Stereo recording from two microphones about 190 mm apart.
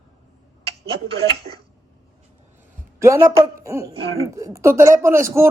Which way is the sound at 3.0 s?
15° right (ahead or behind).